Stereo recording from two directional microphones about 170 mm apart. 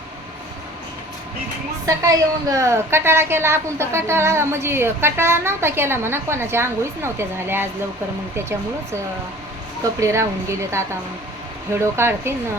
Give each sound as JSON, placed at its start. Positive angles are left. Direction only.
{"t": 2.0, "sound": "a woman's voice", "side_deg": -20}
{"t": 10.0, "sound": "a woman's voice", "side_deg": -15}